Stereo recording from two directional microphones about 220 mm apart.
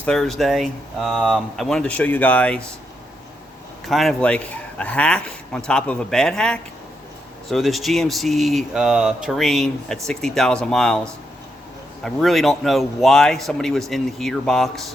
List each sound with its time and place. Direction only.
0.0 s speech: 5° left (ahead or behind)
3.8 s speech: centre (ahead or behind)